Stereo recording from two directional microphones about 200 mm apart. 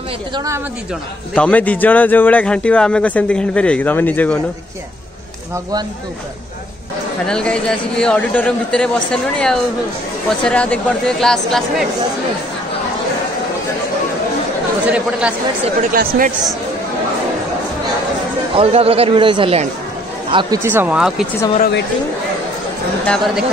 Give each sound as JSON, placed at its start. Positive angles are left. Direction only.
{"t": 1.3, "sound": "speech", "side_deg": 5}
{"t": 7.2, "sound": "a man's voice", "side_deg": 5}
{"t": 14.9, "sound": "a man's voice", "side_deg": -5}
{"t": 15.8, "sound": "speech", "side_deg": -45}
{"t": 18.6, "sound": "speech", "side_deg": -30}
{"t": 21.5, "sound": "speech", "side_deg": 55}
{"t": 23.0, "sound": "a man's voice", "side_deg": 0}